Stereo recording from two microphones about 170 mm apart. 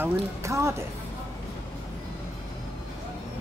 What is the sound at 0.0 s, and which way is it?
Speech, 15° right (ahead or behind).